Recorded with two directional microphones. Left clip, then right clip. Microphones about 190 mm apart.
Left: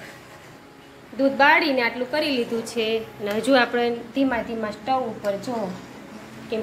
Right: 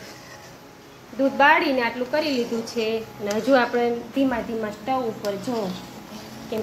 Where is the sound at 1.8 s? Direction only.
5° left (ahead or behind).